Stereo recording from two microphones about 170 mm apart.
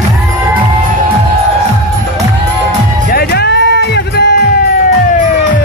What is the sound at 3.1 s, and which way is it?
Music, 70° left (ahead or behind).